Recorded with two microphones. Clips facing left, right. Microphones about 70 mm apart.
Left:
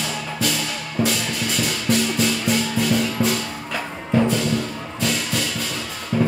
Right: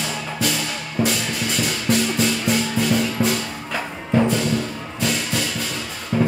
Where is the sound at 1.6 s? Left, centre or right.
Right.